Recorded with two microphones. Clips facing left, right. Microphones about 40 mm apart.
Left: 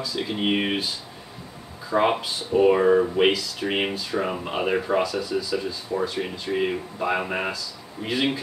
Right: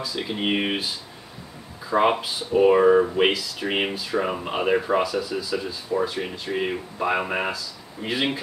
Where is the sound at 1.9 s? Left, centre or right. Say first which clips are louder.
Right 1 dB; centre.